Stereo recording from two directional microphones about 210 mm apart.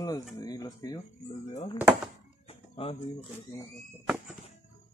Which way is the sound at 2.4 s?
25° left (ahead or behind).